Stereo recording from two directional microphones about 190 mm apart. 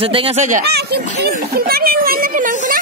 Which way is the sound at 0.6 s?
55° right (ahead or behind).